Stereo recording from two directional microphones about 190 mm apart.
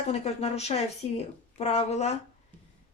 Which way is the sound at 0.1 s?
35° left (ahead or behind).